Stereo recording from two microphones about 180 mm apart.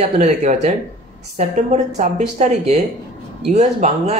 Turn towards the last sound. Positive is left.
turn(degrees=-40)  # may be behind; listen again after turning